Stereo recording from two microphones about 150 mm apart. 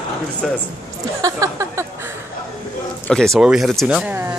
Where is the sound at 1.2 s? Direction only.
20° right (ahead or behind).